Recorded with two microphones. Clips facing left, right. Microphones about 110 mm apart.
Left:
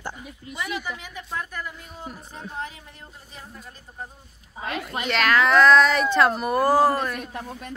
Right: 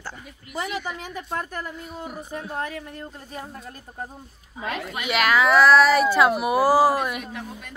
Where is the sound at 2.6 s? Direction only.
60° right (ahead or behind).